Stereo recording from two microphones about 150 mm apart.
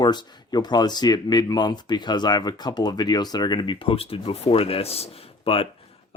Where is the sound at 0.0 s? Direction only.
30° left (ahead or behind).